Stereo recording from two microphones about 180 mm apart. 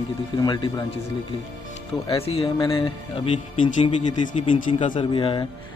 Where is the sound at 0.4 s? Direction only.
25° left (ahead or behind).